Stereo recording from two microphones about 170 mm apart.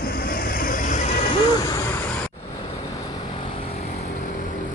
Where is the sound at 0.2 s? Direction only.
60° left (ahead or behind); by 1.3 s 45° left (ahead or behind).